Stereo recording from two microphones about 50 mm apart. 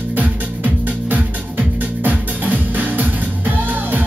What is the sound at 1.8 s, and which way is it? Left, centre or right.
Music, right.